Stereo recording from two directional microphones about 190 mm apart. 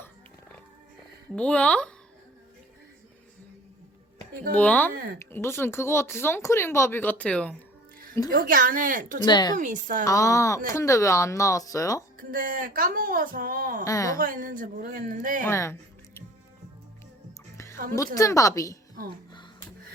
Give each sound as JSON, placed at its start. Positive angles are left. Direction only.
{"t": 1.4, "sound": "speech", "side_deg": 5}
{"t": 4.5, "sound": "speech", "side_deg": 10}
{"t": 4.9, "sound": "speech", "side_deg": -50}
{"t": 5.2, "sound": "speech", "side_deg": 15}
{"t": 8.3, "sound": "speech", "side_deg": -50}
{"t": 9.2, "sound": "a woman's voice", "side_deg": 20}
{"t": 12.1, "sound": "speech", "side_deg": -45}
{"t": 13.8, "sound": "speech", "side_deg": 15}
{"t": 14.2, "sound": "speech", "side_deg": -45}
{"t": 15.4, "sound": "music", "side_deg": 15}
{"t": 17.9, "sound": "speech", "side_deg": 15}